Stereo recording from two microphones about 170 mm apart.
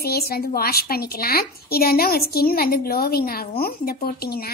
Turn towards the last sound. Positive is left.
turn(degrees=65)  # may be behind; listen again after turning